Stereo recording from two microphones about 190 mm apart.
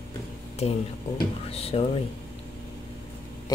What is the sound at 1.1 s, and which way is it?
Speech, 30° left (ahead or behind).